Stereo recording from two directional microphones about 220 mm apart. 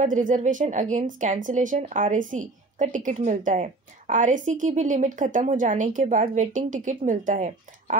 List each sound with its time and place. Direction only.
0.0 s a woman's voice: 35° right (ahead or behind)